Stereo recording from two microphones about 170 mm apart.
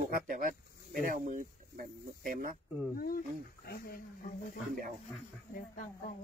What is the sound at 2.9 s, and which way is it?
Speech, 60° left (ahead or behind).